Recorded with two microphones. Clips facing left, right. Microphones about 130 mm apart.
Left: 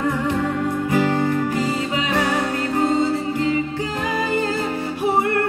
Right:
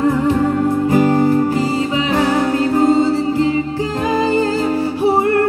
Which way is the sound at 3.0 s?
25° right (ahead or behind).